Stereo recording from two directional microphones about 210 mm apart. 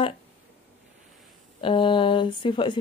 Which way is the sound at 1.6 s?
25° left (ahead or behind).